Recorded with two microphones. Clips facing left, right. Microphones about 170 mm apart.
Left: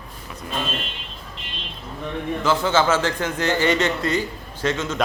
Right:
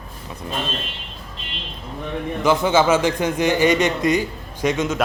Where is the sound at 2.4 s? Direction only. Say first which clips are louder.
Right 3 dB; 15° right (ahead or behind).